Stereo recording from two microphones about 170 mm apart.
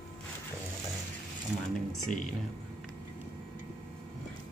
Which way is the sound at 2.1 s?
50° left (ahead or behind).